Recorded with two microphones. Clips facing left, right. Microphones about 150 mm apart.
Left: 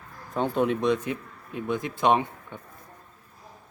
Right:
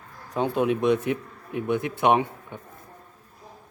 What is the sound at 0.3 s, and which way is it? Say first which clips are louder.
Speech: right 1 dB; 5° right (ahead or behind).